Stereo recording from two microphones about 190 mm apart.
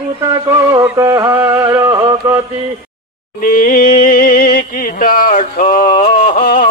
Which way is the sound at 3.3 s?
45° left (ahead or behind).